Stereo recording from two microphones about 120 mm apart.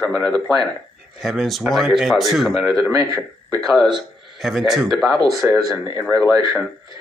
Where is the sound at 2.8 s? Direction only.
25° right (ahead or behind).